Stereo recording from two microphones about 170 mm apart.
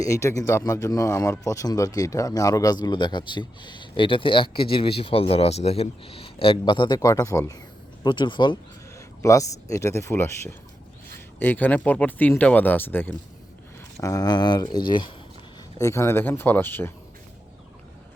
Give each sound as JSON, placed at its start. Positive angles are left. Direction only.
{"t": 0.0, "sound": "speech", "side_deg": 15}
{"t": 15.8, "sound": "speech", "side_deg": 15}